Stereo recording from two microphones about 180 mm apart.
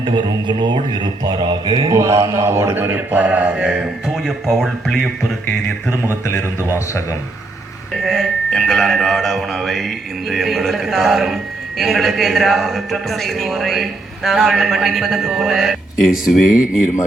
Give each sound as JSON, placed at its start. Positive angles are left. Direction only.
{"t": 0.0, "sound": "speech", "side_deg": -25}
{"t": 8.0, "sound": "a man's voice", "side_deg": 0}